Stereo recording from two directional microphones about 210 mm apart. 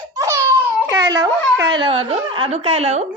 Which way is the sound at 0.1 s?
15° right (ahead or behind).